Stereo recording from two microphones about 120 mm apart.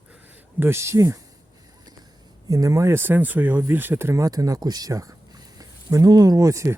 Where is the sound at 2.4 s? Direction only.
30° right (ahead or behind).